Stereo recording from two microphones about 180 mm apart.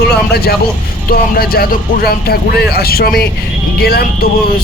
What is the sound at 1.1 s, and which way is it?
Speech, 55° left (ahead or behind).